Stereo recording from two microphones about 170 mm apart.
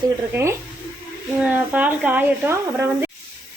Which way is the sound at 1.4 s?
10° right (ahead or behind).